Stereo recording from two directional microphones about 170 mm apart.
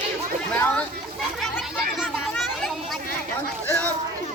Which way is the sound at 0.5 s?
10° left (ahead or behind).